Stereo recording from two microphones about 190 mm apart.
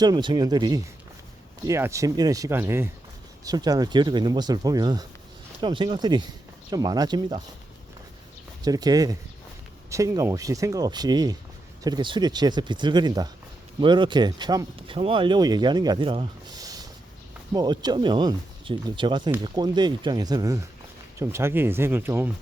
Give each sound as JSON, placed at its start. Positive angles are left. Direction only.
{"t": 0.0, "sound": "speech", "side_deg": -20}
{"t": 8.6, "sound": "speech", "side_deg": -20}